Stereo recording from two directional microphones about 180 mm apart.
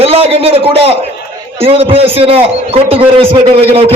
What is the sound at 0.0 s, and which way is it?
A man's voice, 35° right (ahead or behind).